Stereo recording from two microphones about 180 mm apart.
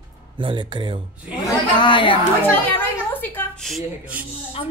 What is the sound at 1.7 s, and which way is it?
Speech, 25° left (ahead or behind).